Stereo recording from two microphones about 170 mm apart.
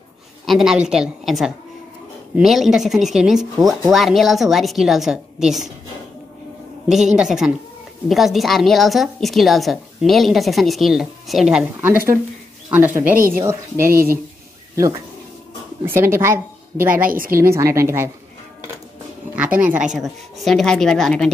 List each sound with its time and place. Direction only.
0.5 s a woman's voice: centre (ahead or behind)
6.9 s a woman's voice: 5° right (ahead or behind)
13.8 s speech: 60° right (ahead or behind)
15.8 s a woman's voice: 15° right (ahead or behind)
17.1 s speech: 55° right (ahead or behind)
17.4 s a woman's voice: 15° right (ahead or behind)
19.3 s a woman's voice: 5° right (ahead or behind)